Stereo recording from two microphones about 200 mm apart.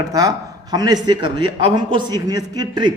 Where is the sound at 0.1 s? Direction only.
20° right (ahead or behind).